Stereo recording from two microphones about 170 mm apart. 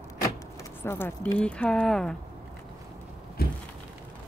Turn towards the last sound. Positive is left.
turn(degrees=65)  # may be behind; listen again after turning